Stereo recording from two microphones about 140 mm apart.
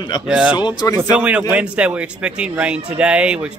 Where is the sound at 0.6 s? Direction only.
30° left (ahead or behind).